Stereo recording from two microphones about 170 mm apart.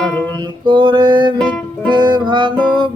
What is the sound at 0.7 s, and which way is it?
Music, 25° right (ahead or behind).